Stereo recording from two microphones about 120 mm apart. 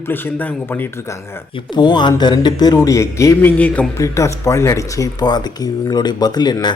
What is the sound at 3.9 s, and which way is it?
Speech, 25° left (ahead or behind).